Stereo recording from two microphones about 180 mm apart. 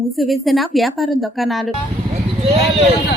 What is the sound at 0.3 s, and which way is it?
A woman's voice, centre (ahead or behind).